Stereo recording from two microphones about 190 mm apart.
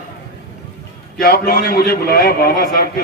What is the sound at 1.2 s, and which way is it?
A man's voice, 50° left (ahead or behind).